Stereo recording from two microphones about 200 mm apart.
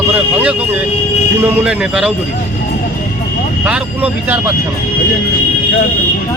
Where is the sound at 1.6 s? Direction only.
5° right (ahead or behind).